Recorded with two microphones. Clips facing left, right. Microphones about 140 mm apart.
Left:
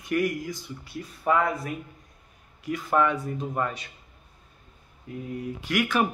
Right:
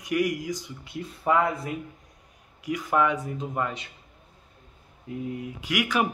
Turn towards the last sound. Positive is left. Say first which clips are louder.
# left 1 dB
turn(degrees=-15)  # may be behind; listen again after turning